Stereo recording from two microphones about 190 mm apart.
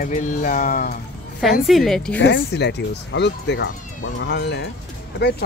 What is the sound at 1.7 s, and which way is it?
Speech, centre (ahead or behind).